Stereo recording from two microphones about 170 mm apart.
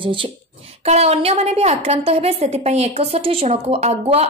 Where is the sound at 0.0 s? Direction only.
30° right (ahead or behind).